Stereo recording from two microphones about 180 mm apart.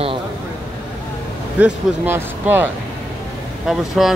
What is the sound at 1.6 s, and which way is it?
Speech, 10° right (ahead or behind).